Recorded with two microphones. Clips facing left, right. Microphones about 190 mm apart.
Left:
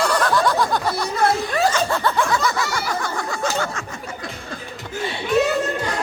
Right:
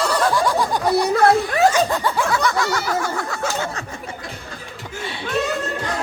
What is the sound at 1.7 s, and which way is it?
Snicker, 15° right (ahead or behind).